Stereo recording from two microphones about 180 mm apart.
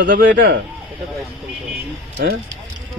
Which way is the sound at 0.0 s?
75° right (ahead or behind).